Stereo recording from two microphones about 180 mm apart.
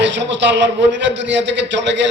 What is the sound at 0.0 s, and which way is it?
A man's voice, 85° right.